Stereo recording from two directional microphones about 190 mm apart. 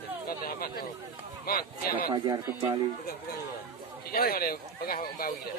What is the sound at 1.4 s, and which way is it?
Speech, 50° left (ahead or behind).